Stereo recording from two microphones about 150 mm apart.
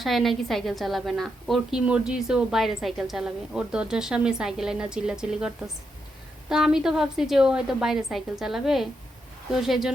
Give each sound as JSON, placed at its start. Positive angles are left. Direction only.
{"t": 0.0, "sound": "a woman's voice", "side_deg": 0}
{"t": 6.5, "sound": "a woman's voice", "side_deg": -5}